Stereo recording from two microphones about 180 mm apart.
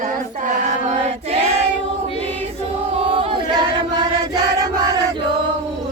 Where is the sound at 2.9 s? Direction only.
30° right (ahead or behind).